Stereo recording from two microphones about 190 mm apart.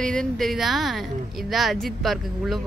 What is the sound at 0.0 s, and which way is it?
A woman's voice, 5° left (ahead or behind).